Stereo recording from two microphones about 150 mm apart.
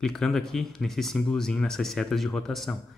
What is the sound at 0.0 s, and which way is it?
Speech, 5° left (ahead or behind).